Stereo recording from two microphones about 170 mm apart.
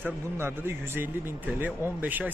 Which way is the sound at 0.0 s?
15° right (ahead or behind).